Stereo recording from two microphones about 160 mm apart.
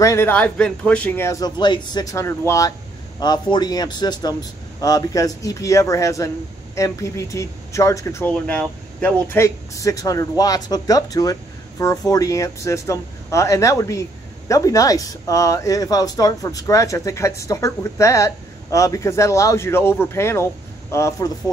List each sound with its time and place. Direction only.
0.0 s speech: 15° left (ahead or behind)